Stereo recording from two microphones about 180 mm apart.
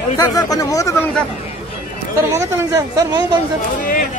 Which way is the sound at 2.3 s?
15° right (ahead or behind).